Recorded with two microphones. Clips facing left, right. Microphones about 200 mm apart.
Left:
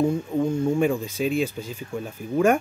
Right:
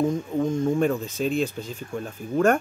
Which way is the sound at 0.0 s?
10° left (ahead or behind).